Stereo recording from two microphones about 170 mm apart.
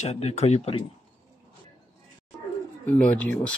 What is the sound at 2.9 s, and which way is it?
Speech, 10° left (ahead or behind).